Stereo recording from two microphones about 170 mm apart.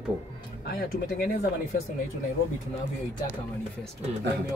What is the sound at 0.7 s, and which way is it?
Speech, 70° left (ahead or behind).